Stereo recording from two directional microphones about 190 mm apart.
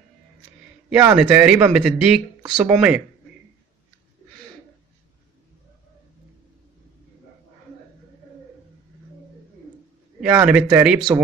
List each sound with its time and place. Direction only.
0.8 s speech: 5° right (ahead or behind)
10.2 s speech: 5° right (ahead or behind)